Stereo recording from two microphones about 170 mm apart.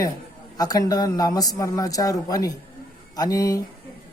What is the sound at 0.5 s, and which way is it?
Speech, 20° left (ahead or behind).